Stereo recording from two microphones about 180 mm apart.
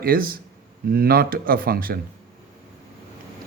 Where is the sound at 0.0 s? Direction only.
55° right (ahead or behind).